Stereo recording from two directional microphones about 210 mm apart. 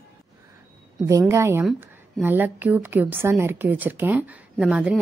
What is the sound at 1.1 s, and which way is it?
A woman's voice, 15° right (ahead or behind).